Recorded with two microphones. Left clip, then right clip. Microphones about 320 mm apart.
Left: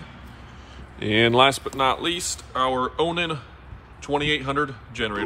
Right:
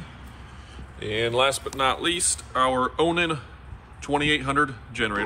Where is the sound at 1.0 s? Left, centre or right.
Centre.